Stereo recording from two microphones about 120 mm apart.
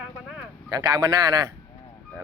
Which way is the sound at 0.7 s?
30° right (ahead or behind).